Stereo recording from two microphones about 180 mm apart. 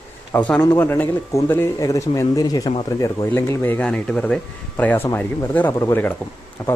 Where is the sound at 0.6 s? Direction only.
10° left (ahead or behind).